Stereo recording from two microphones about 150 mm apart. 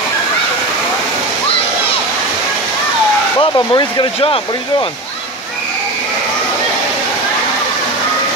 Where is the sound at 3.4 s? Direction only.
30° left (ahead or behind).